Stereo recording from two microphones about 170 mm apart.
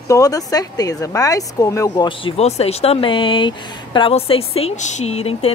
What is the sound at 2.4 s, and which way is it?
A woman's voice, 40° left (ahead or behind).